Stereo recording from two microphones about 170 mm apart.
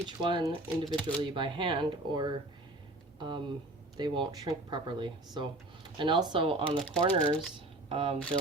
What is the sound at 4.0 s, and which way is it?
Speech, 25° right (ahead or behind).